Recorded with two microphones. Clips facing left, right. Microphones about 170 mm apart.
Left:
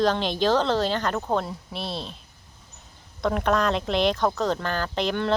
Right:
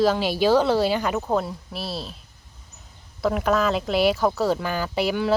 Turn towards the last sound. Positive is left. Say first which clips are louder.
# right 2 dB
turn(degrees=-5)  # may be behind; listen again after turning